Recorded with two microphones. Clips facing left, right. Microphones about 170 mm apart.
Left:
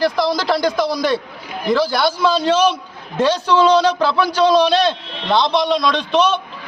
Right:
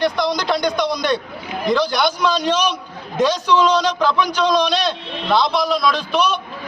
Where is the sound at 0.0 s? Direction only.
Centre (ahead or behind).